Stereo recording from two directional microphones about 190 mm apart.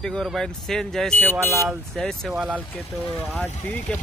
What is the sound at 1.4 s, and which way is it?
Speech, 15° right (ahead or behind).